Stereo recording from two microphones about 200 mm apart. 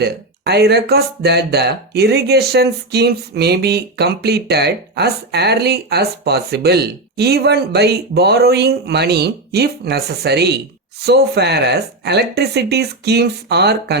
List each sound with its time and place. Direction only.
0.0 s speech: 55° right (ahead or behind)